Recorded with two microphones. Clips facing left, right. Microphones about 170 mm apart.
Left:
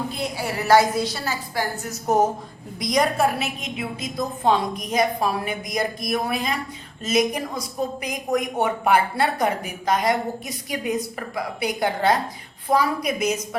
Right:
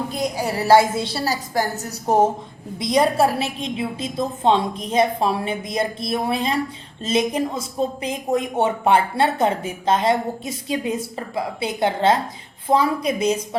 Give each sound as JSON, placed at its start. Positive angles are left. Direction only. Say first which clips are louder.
{"t": 0.2, "sound": "a woman's voice", "louder": "right 4 dB", "side_deg": -40}